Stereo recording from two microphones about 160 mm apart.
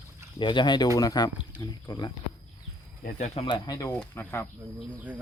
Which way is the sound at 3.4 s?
30° left (ahead or behind).